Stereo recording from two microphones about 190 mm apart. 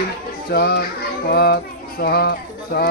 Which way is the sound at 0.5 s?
55° left (ahead or behind).